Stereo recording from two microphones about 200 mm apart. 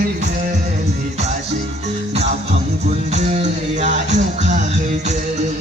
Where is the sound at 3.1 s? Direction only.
35° right (ahead or behind).